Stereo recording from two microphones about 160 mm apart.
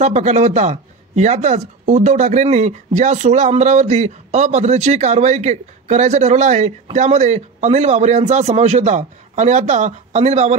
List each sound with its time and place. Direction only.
0.0 s speech: 45° right (ahead or behind)